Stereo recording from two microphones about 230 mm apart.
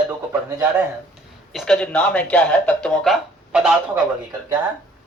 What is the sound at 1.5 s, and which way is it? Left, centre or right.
Speech, centre.